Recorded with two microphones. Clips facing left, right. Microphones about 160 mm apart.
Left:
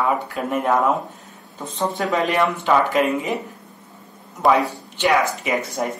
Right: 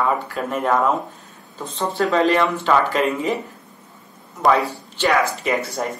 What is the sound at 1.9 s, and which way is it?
Speech, 15° left (ahead or behind).